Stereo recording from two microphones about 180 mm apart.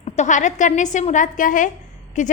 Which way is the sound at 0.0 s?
40° left (ahead or behind).